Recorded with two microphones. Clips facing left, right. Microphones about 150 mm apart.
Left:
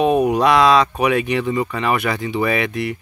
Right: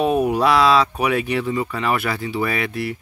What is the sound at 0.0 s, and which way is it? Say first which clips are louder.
Speech: left 2 dB; 5° right (ahead or behind).